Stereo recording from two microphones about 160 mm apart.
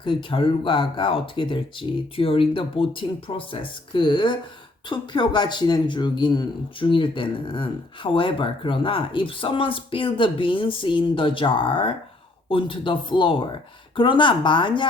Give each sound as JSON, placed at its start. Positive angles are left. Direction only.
{"t": 0.0, "sound": "speech", "side_deg": 30}